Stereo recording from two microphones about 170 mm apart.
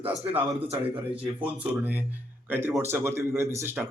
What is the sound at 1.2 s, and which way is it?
A man's voice, 10° right (ahead or behind).